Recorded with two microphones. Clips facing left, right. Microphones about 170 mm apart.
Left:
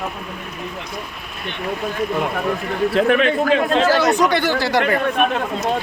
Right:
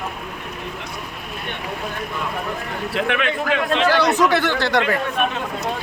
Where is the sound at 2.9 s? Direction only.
40° left (ahead or behind).